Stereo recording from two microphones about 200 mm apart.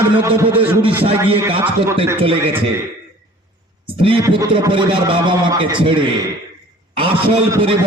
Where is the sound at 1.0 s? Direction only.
25° right (ahead or behind).